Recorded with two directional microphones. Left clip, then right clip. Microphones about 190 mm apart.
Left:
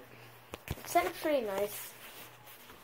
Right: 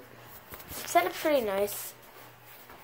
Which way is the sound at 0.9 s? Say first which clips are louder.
Right 5 dB; 5° right (ahead or behind).